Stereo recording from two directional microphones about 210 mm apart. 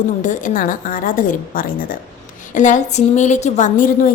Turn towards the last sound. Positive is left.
turn(degrees=40)  # may be behind; listen again after turning